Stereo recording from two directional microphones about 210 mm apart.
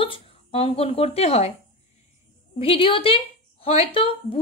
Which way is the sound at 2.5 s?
25° left (ahead or behind).